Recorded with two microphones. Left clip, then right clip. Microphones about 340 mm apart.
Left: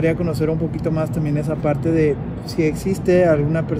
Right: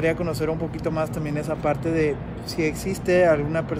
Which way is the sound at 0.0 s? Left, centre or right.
Centre.